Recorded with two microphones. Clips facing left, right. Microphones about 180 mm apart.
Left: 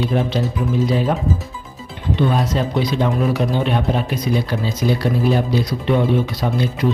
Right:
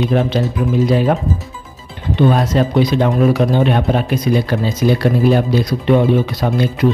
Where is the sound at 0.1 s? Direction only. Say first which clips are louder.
Right 4 dB; 70° right (ahead or behind).